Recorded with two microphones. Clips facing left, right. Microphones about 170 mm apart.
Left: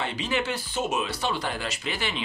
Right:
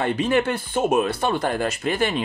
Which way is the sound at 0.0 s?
50° right (ahead or behind).